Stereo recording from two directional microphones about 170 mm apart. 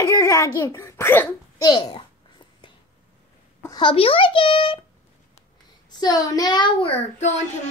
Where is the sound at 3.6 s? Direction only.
25° left (ahead or behind).